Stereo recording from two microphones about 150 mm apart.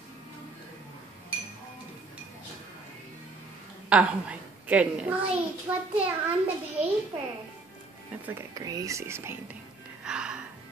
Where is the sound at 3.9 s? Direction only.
10° right (ahead or behind).